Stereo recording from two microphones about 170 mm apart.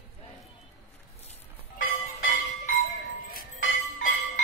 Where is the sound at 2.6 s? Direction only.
55° left (ahead or behind).